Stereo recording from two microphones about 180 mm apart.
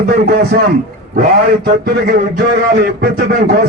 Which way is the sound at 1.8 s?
60° right (ahead or behind).